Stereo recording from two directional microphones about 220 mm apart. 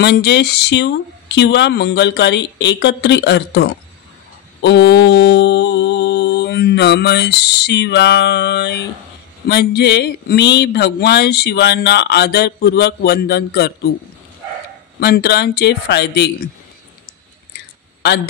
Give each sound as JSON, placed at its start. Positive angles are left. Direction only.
{"t": 0.0, "sound": "speech", "side_deg": 50}
{"t": 4.6, "sound": "mantra", "side_deg": 50}
{"t": 9.5, "sound": "speech", "side_deg": 50}
{"t": 15.0, "sound": "speech", "side_deg": 45}